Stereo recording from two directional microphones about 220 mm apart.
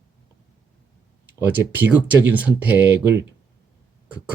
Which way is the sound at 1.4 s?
10° right (ahead or behind).